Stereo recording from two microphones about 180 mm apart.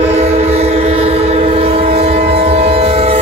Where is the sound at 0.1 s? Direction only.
35° right (ahead or behind).